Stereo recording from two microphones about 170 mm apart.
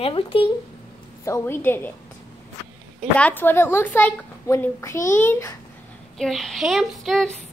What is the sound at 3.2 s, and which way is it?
A woman's voice, 10° left (ahead or behind).